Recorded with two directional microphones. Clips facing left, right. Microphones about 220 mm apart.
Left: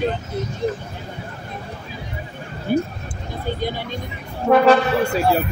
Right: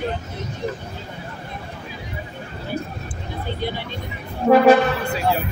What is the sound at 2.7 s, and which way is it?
Basketball bounce, 50° left (ahead or behind).